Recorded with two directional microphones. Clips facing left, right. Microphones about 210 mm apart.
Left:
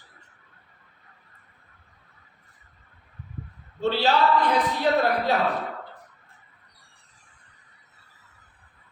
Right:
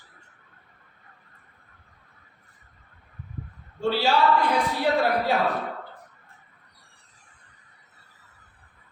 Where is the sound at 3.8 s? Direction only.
10° right (ahead or behind).